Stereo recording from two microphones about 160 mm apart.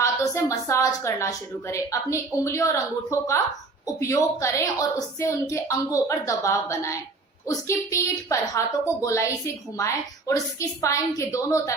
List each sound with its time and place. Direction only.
0.0 s a woman's voice: 20° left (ahead or behind)